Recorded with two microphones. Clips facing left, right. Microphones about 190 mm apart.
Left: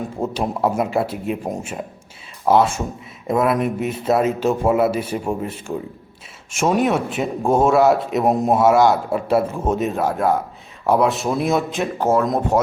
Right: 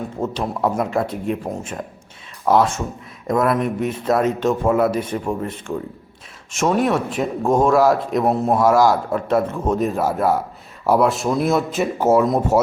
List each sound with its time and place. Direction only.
0.2 s a man's voice: 10° left (ahead or behind)
2.5 s a man's voice: centre (ahead or behind)
8.2 s a man's voice: 15° left (ahead or behind)
8.5 s a man's voice: 5° left (ahead or behind)